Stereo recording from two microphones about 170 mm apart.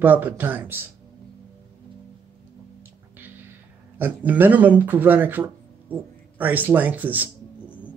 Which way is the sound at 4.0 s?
10° right (ahead or behind).